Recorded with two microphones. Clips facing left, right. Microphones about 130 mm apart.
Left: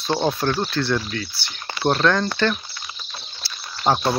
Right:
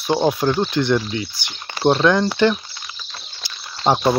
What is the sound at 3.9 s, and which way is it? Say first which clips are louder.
Speech: right 2 dB; 20° right (ahead or behind).